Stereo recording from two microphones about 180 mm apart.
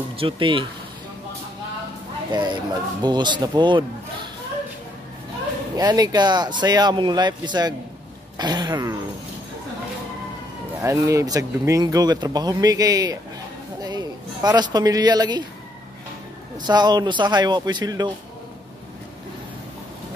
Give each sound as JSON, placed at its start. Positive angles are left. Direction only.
{"t": 0.2, "sound": "speech", "side_deg": -30}
{"t": 2.3, "sound": "speech", "side_deg": -25}
{"t": 5.8, "sound": "speech", "side_deg": -20}
{"t": 10.8, "sound": "speech", "side_deg": -15}
{"t": 16.5, "sound": "speech", "side_deg": -25}